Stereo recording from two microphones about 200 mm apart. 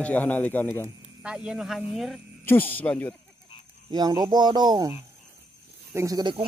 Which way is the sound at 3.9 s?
20° right (ahead or behind).